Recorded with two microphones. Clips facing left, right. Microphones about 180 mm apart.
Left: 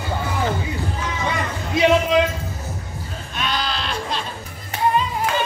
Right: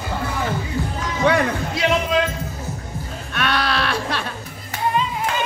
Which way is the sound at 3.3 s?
65° right (ahead or behind).